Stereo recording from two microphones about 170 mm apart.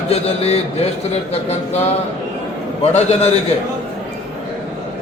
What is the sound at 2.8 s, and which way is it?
Speech, 40° left (ahead or behind).